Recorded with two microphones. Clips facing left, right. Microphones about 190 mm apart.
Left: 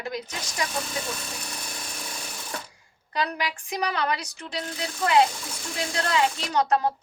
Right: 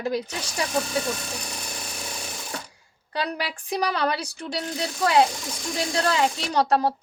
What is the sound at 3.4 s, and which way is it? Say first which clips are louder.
A woman's voice: right 2 dB; 35° right (ahead or behind).